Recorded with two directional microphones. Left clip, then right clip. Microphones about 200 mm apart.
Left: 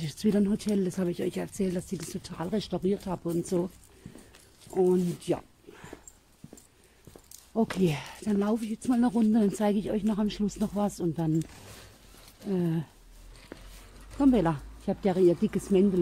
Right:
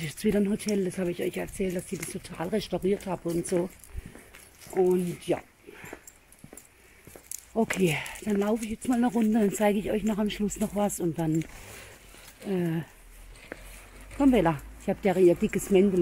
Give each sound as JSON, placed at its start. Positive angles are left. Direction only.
{"t": 0.0, "sound": "speech", "side_deg": 10}
{"t": 4.7, "sound": "speech", "side_deg": 10}
{"t": 7.5, "sound": "speech", "side_deg": 0}
{"t": 12.4, "sound": "speech", "side_deg": 5}
{"t": 13.5, "sound": "a sound", "side_deg": -20}
{"t": 14.1, "sound": "speech", "side_deg": 0}